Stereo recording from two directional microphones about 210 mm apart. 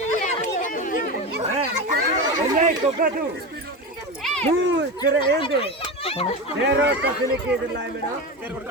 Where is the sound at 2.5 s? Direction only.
40° right (ahead or behind).